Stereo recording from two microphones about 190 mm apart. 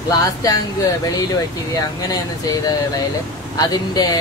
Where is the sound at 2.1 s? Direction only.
20° left (ahead or behind).